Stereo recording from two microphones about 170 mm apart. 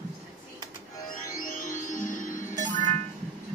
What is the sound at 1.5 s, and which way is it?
Music, 50° left (ahead or behind).